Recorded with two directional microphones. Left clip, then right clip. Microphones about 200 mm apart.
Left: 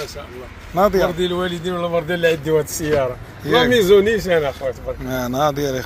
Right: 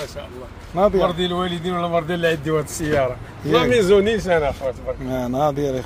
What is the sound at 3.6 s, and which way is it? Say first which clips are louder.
Speech: left 3 dB; 45° left (ahead or behind).